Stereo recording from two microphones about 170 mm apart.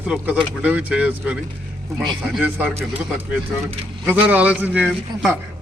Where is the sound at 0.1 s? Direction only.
5° right (ahead or behind).